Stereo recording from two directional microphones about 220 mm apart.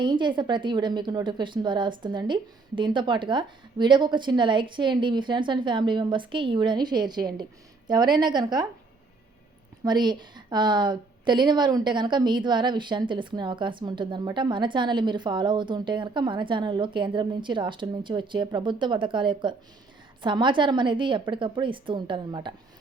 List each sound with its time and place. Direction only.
0.0 s a woman's voice: 20° right (ahead or behind)
9.8 s a woman's voice: 20° right (ahead or behind)